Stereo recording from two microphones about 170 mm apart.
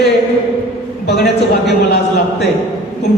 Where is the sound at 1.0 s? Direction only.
75° left (ahead or behind).